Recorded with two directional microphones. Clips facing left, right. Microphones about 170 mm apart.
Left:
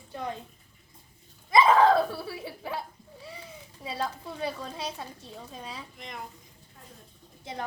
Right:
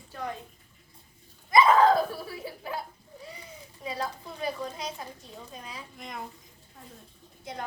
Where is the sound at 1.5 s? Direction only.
25° left (ahead or behind).